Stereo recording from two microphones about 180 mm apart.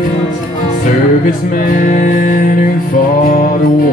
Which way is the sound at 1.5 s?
45° left (ahead or behind).